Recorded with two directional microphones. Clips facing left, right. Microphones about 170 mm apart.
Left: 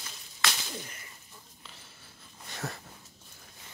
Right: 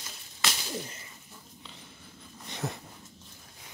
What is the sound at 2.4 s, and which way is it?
Dog, 20° right (ahead or behind).